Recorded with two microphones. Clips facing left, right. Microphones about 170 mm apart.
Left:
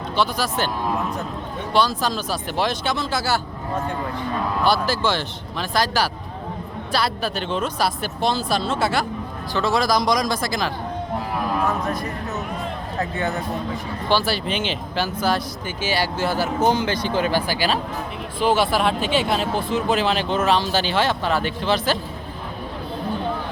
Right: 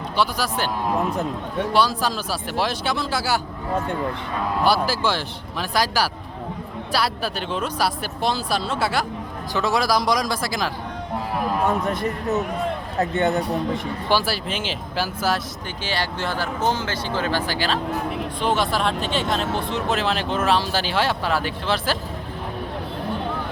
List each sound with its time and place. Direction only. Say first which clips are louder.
0.2 s speech: left 1 dB; 10° right (ahead or behind)
1.7 s speech: left 2 dB; 10° right (ahead or behind)
4.9 s speech: left 1 dB; 5° right (ahead or behind)
11.6 s speech: right 2 dB; 25° right (ahead or behind)
14.1 s speech: left 2 dB; 5° right (ahead or behind)
15.8 s speech: left 4 dB; 10° left (ahead or behind)